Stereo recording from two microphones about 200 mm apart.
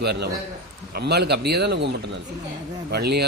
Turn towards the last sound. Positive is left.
turn(degrees=-55)  # may be behind; listen again after turning